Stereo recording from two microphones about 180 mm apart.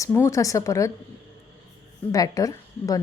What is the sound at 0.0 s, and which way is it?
Speech, 15° left (ahead or behind).